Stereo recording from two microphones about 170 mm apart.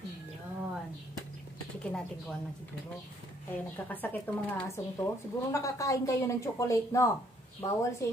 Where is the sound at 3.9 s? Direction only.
10° left (ahead or behind).